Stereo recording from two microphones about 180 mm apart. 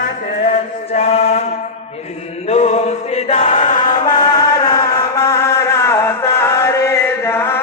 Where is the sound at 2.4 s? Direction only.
35° left (ahead or behind).